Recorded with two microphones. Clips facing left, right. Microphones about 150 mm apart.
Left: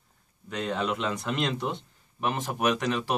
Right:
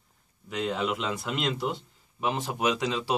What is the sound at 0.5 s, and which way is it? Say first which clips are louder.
Speech: even; 10° right (ahead or behind).